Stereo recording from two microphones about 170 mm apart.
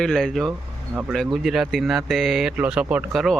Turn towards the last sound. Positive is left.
turn(degrees=-5)  # may be behind; listen again after turning